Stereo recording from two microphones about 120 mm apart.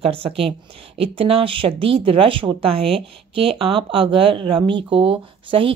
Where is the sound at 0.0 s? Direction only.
55° right (ahead or behind).